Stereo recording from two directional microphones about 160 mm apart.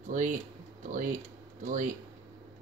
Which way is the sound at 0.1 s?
55° right (ahead or behind).